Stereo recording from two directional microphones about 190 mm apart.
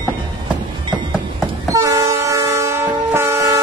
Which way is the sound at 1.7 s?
15° right (ahead or behind).